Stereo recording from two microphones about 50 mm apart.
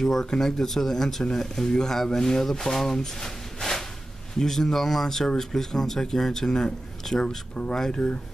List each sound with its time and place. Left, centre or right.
0.0 s speech: centre